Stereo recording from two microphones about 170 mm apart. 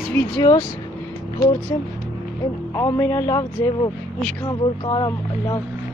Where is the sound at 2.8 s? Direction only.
20° left (ahead or behind).